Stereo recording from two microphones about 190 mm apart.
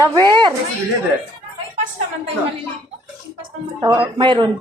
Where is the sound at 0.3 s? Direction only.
25° right (ahead or behind).